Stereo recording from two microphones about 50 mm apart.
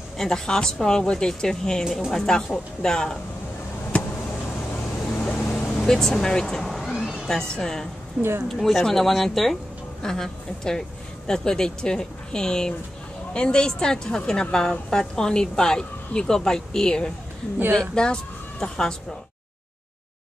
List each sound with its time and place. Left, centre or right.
0.2 s a woman's voice: centre
5.4 s vehicle: left
5.7 s speech: centre
6.8 s vehicle: centre
7.2 s a woman's voice: centre
8.2 s speech: right
8.5 s a woman's voice: centre